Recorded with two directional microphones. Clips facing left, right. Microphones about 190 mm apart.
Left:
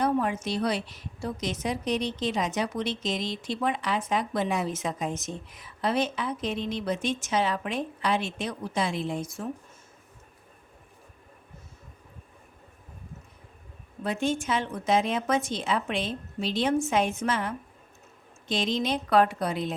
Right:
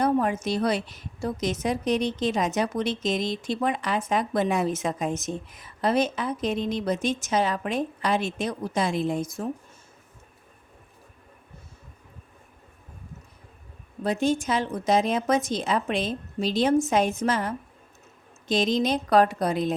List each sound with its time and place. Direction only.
0.0 s a woman's voice: 45° right (ahead or behind)
14.0 s a woman's voice: 40° right (ahead or behind)